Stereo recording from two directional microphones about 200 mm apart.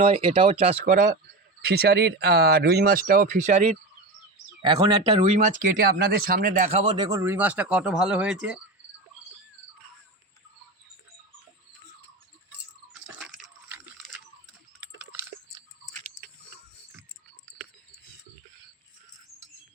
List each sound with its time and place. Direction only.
0.1 s speech: 25° right (ahead or behind)
1.6 s speech: 50° right (ahead or behind); by 3.8 s 35° right (ahead or behind)
4.6 s speech: 25° right (ahead or behind); by 8.6 s 5° right (ahead or behind)
12.5 s a sound: 5° right (ahead or behind)